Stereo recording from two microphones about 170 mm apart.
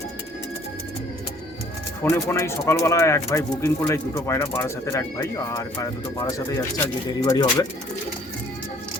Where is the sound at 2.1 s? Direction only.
15° left (ahead or behind).